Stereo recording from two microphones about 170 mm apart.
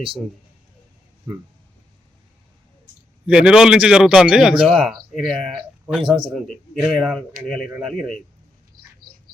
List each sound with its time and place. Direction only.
3.2 s speech: 5° right (ahead or behind)
6.0 s a man's voice: 30° right (ahead or behind)
6.8 s speech: centre (ahead or behind)